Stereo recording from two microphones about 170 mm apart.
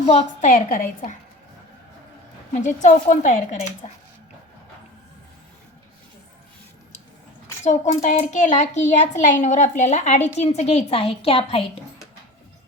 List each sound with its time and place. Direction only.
0.0 s a child's voice: 40° left (ahead or behind); by 1.1 s 55° left (ahead or behind)
2.5 s a child's voice: 45° left (ahead or behind)
7.6 s a child's voice: 45° left (ahead or behind)